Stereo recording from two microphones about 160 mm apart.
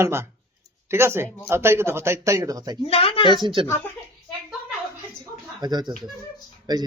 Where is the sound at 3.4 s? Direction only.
30° right (ahead or behind).